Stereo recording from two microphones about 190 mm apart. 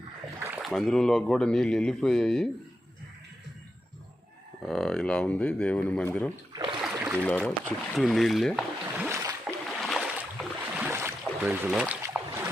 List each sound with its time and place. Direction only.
0.4 s a sound: 10° right (ahead or behind)
0.7 s speech: centre (ahead or behind)
4.6 s speech: centre (ahead or behind)
6.5 s rowboat: 25° right (ahead or behind)
6.9 s a sound: 10° right (ahead or behind)
7.6 s speech: centre (ahead or behind)
9.0 s boat: 15° right (ahead or behind)
9.6 s boat: centre (ahead or behind)